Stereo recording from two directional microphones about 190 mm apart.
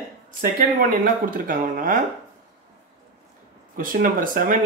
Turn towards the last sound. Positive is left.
turn(degrees=-45)  # may be behind; listen again after turning